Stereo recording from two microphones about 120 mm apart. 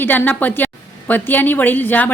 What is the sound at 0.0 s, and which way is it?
A woman's voice, 15° left (ahead or behind).